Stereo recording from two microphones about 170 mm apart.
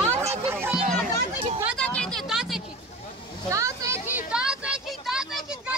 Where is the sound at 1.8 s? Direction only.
5° left (ahead or behind).